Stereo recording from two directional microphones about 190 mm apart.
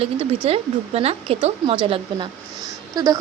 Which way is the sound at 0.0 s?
30° right (ahead or behind).